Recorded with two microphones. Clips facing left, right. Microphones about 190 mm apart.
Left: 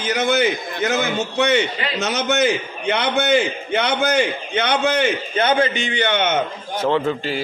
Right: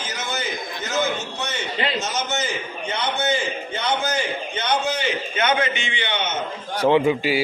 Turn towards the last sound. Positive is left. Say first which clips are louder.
# right 2 dB
turn(degrees=-10)  # may be behind; listen again after turning